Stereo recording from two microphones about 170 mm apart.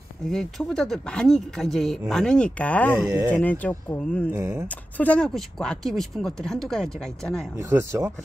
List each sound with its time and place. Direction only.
0.3 s speech: 5° left (ahead or behind)
4.3 s speech: 15° right (ahead or behind)
4.6 s speech: 10° left (ahead or behind)
7.5 s speech: 15° right (ahead or behind)